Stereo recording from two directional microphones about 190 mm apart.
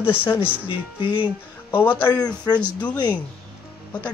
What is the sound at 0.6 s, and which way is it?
Speech, 25° left (ahead or behind).